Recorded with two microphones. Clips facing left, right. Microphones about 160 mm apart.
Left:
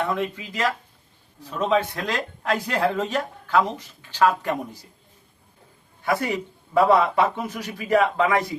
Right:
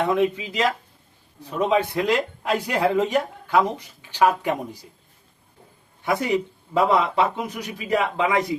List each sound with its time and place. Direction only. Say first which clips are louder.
0.0 s speech: right 5 dB; 15° right (ahead or behind)
6.1 s a man's voice: right 2 dB; 20° right (ahead or behind)